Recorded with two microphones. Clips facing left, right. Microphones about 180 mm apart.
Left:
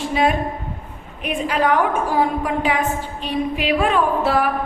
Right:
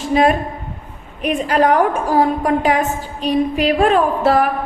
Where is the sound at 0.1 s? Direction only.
45° right (ahead or behind).